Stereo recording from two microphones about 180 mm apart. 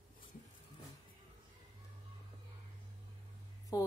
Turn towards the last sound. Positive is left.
turn(degrees=20)  # may be behind; listen again after turning